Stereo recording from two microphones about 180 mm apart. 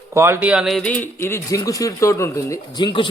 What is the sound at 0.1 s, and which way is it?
A man's voice, 15° right (ahead or behind).